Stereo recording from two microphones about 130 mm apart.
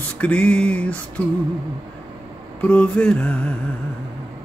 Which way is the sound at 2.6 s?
10° left (ahead or behind).